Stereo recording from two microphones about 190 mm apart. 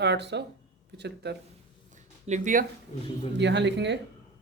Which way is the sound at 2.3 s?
40° right (ahead or behind).